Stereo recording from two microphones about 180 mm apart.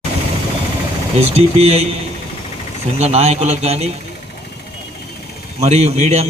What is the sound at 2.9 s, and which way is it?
Speech, 35° right (ahead or behind).